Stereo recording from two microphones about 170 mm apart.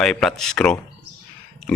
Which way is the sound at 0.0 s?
5° left (ahead or behind).